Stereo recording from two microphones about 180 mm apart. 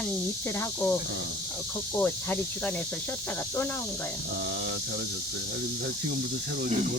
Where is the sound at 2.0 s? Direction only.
10° left (ahead or behind).